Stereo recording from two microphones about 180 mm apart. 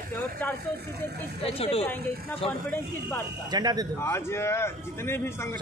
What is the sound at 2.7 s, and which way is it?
Speech, 10° left (ahead or behind).